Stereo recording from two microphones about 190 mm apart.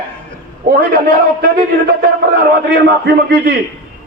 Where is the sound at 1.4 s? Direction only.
55° right (ahead or behind).